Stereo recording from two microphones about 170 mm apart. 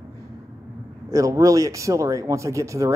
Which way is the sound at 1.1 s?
20° right (ahead or behind).